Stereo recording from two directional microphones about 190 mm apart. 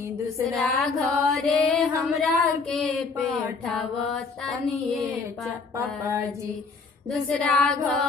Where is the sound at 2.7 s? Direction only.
Centre (ahead or behind).